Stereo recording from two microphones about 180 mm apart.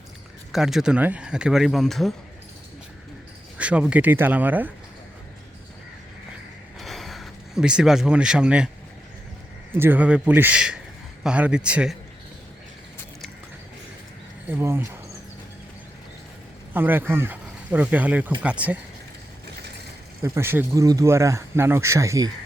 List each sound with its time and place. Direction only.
0.5 s speech: centre (ahead or behind)
3.6 s speech: 5° right (ahead or behind)
6.7 s a sound: centre (ahead or behind)
9.7 s speech: 10° right (ahead or behind)
14.4 s speech: 10° right (ahead or behind)
16.7 s speech: 10° right (ahead or behind)
20.2 s speech: 15° right (ahead or behind)